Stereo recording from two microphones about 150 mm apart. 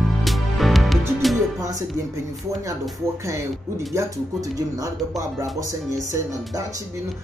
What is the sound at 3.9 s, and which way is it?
Speech, 25° right (ahead or behind).